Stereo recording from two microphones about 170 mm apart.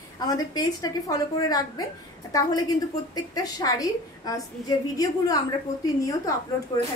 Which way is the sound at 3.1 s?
20° left (ahead or behind).